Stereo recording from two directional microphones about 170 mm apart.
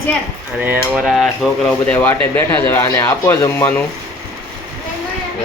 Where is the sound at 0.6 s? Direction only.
10° right (ahead or behind).